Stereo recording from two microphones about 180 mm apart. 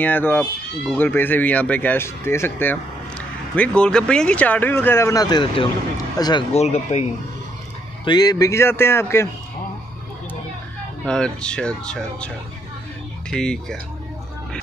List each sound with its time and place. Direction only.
0.0 s speech: 10° left (ahead or behind)
6.5 s speech: 40° left (ahead or behind)
8.0 s speech: 25° left (ahead or behind)
11.1 s speech: 5° left (ahead or behind)
13.3 s speech: 5° left (ahead or behind)